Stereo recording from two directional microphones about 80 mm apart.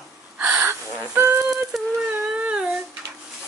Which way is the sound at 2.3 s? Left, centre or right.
Centre.